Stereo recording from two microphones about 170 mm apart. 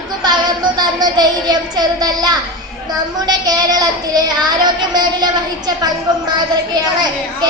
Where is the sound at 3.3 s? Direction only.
25° right (ahead or behind).